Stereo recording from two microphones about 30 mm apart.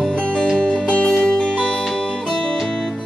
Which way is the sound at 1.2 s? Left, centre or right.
Left.